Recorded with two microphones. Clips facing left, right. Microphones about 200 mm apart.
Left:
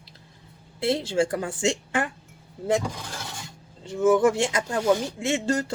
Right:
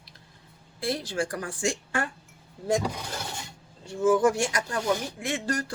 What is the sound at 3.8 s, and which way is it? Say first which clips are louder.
Speech: left 2 dB; 25° left (ahead or behind).